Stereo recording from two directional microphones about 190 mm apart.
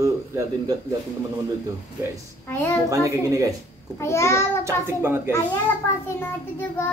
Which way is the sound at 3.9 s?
15° left (ahead or behind).